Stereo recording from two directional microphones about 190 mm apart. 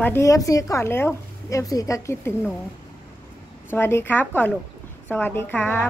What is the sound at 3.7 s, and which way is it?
Speech, 10° left (ahead or behind).